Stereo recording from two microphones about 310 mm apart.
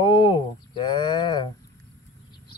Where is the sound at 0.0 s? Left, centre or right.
Centre.